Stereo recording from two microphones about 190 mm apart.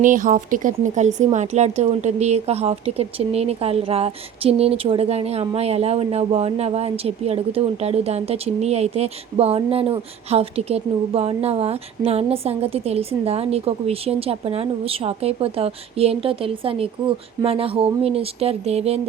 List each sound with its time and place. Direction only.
0.0 s a woman's voice: 45° right (ahead or behind)